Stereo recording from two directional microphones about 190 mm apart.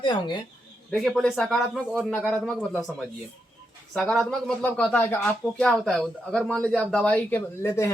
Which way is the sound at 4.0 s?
Centre (ahead or behind).